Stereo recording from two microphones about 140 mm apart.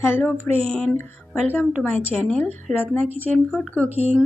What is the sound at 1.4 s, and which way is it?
Speech, 15° left (ahead or behind).